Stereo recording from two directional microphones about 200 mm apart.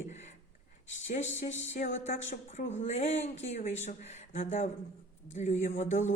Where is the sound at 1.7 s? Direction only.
35° left (ahead or behind).